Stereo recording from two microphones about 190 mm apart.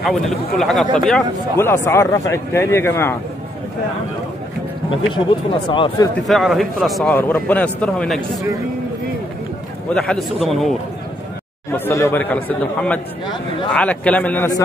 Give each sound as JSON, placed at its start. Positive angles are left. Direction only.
{"t": 0.0, "sound": "speech", "side_deg": 0}
{"t": 5.7, "sound": "speech", "side_deg": 25}
{"t": 6.2, "sound": "speech", "side_deg": 0}
{"t": 9.9, "sound": "speech", "side_deg": 0}
{"t": 11.7, "sound": "speech", "side_deg": 10}